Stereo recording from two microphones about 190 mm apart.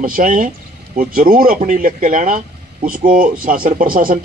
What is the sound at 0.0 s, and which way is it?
Speech, 45° right (ahead or behind).